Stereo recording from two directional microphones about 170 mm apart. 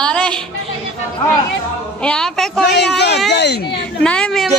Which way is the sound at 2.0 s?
5° left (ahead or behind).